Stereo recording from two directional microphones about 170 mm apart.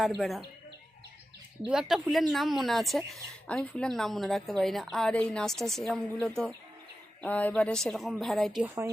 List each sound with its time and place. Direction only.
0.2 s speech: centre (ahead or behind)
1.7 s speech: centre (ahead or behind)